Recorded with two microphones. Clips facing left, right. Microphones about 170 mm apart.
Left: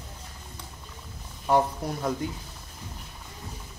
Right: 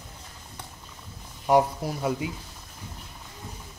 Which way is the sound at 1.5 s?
10° right (ahead or behind).